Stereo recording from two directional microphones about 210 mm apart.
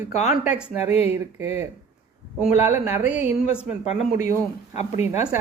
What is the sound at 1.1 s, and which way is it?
Speech, 15° right (ahead or behind).